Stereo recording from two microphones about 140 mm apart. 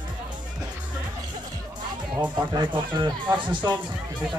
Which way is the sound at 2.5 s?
30° right (ahead or behind).